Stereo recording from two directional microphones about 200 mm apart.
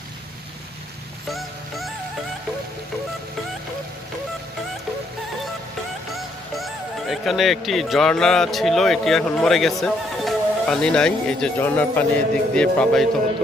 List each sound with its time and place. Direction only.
6.1 s speech: centre (ahead or behind)